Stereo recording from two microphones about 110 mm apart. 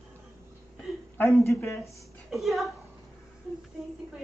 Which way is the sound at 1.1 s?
20° left (ahead or behind).